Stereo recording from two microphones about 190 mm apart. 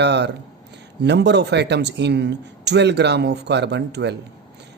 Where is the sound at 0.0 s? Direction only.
65° right (ahead or behind).